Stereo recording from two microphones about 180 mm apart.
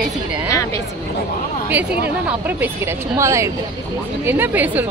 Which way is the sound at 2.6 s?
15° right (ahead or behind).